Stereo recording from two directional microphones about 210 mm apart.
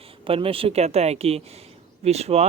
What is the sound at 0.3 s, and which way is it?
Speech, 25° right (ahead or behind).